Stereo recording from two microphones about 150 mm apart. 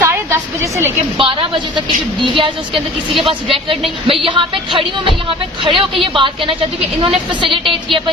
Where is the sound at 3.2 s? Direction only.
40° right (ahead or behind).